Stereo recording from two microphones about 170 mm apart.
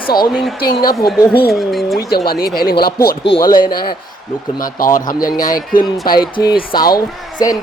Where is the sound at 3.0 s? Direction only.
90° left.